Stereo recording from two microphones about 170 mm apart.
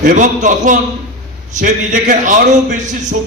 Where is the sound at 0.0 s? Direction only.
50° right (ahead or behind).